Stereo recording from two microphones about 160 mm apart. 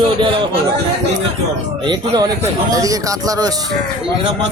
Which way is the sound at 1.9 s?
25° right (ahead or behind).